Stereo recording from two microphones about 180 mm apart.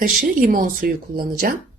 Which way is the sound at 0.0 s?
50° right (ahead or behind).